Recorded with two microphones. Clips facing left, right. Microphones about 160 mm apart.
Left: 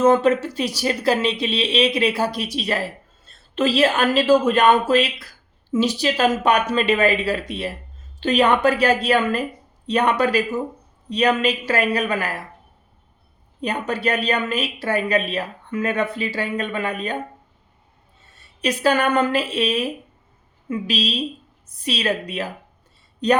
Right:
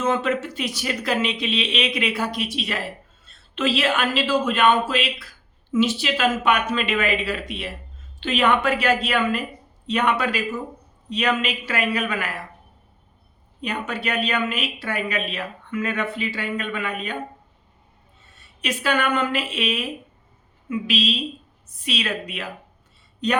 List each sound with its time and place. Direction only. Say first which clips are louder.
0.0 s speech: left 7 dB; 40° left (ahead or behind)
13.6 s speech: left 4 dB; 35° left (ahead or behind)
18.3 s speech: left 5 dB; 35° left (ahead or behind)